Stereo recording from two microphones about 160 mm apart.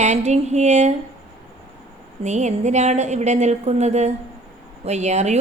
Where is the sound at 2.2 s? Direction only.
45° right (ahead or behind).